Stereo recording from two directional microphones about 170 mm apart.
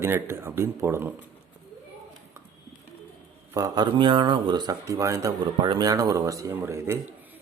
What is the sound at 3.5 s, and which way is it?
Speech, 25° right (ahead or behind).